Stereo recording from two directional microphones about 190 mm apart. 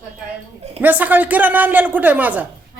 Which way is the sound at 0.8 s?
10° right (ahead or behind).